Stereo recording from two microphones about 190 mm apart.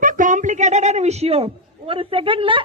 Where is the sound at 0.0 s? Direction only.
45° right (ahead or behind).